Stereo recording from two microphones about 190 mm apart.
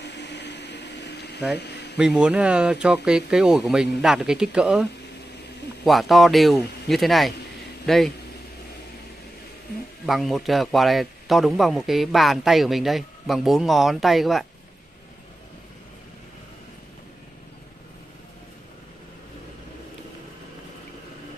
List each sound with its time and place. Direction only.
0.0 s a sound: 65° left (ahead or behind)
2.0 s speech: 5° right (ahead or behind)
5.9 s speech: centre (ahead or behind)
10.0 s speech: centre (ahead or behind)